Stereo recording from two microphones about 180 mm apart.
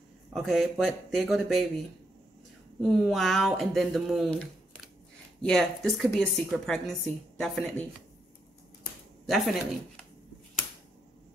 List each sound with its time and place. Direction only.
0.3 s speech: centre (ahead or behind)
2.8 s speech: centre (ahead or behind)
9.2 s speech: centre (ahead or behind)